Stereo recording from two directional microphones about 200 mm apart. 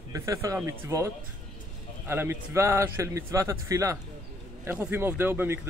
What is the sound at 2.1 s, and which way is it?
A man's voice, 10° right (ahead or behind).